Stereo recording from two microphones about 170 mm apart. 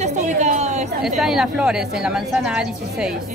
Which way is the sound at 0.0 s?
45° right (ahead or behind).